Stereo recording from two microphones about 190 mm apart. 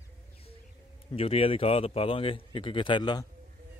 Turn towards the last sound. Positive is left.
turn(degrees=20)  # may be behind; listen again after turning